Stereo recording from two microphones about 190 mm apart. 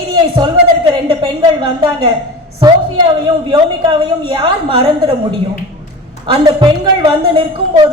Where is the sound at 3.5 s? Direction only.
25° right (ahead or behind).